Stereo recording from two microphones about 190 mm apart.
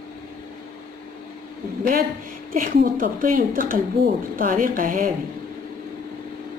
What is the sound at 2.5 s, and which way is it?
A woman's voice, 45° right (ahead or behind).